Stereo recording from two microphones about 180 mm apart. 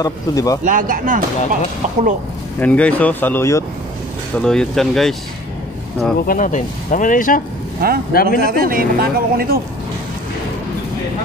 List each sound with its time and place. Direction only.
0.0 s speech: 20° left (ahead or behind)
0.7 s speech: 50° right (ahead or behind)
2.6 s speech: 10° left (ahead or behind)
4.4 s speech: 5° left (ahead or behind)
6.2 s speech: 50° left (ahead or behind)
8.4 s speech: 55° right (ahead or behind)